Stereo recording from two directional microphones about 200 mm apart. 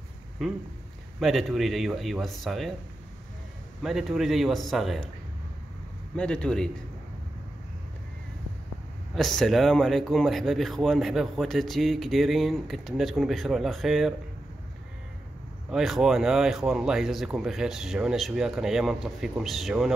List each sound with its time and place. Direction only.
1.2 s speech: centre (ahead or behind)
3.8 s speech: centre (ahead or behind)
6.1 s speech: 5° left (ahead or behind)
9.1 s speech: centre (ahead or behind)
15.7 s speech: centre (ahead or behind)